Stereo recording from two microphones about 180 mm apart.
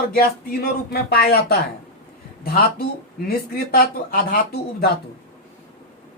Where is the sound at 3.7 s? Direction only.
55° left (ahead or behind).